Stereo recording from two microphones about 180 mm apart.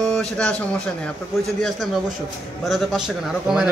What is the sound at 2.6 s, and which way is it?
A man's voice, centre (ahead or behind).